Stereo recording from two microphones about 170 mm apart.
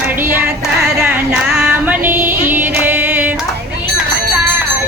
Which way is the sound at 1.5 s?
5° right (ahead or behind).